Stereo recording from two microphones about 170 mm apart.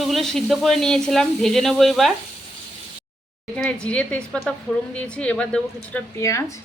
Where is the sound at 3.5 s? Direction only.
5° left (ahead or behind).